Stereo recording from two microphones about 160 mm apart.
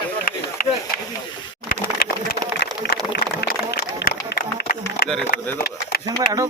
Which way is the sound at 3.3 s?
85° left.